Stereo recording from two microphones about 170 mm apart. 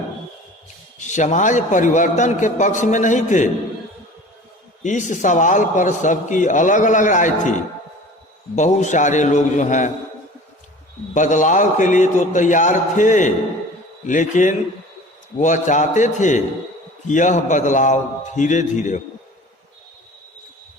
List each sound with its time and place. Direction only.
0.9 s a man's voice: 45° left (ahead or behind)
4.8 s a man's voice: 45° left (ahead or behind)
8.5 s a man's voice: 45° left (ahead or behind)
11.1 s a man's voice: 45° left (ahead or behind)